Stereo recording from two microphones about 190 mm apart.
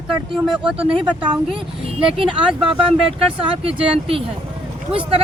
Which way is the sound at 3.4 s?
30° right (ahead or behind).